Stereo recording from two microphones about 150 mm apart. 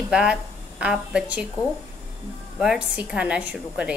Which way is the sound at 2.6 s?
5° right (ahead or behind).